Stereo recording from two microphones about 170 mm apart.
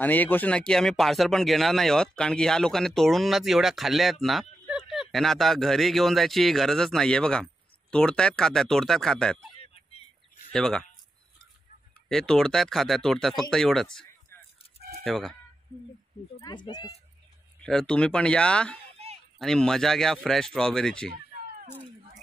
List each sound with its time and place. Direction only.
0.0 s speech: 10° left (ahead or behind)
9.4 s a sound: 35° left (ahead or behind)
10.5 s speech: 5° left (ahead or behind)
12.1 s speech: 5° left (ahead or behind)
16.3 s speech: 25° left (ahead or behind)
17.6 s speech: 5° left (ahead or behind)